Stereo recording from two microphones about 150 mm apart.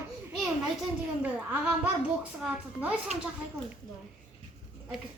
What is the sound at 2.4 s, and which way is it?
Speech, 5° right (ahead or behind).